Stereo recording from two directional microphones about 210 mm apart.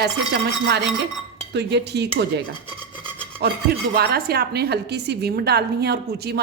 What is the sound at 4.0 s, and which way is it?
A woman's voice, 50° right (ahead or behind).